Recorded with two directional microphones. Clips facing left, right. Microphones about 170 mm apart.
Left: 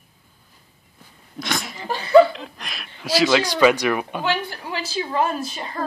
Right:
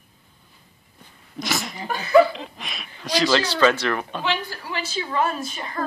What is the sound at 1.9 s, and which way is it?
Speech, 30° left (ahead or behind).